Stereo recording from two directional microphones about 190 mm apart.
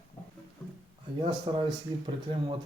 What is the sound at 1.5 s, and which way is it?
Speech, 30° right (ahead or behind).